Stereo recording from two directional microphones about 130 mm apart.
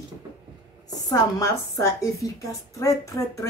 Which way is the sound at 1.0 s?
25° left (ahead or behind).